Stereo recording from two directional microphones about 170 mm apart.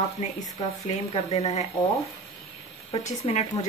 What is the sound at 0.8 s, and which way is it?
Speech, 40° left (ahead or behind).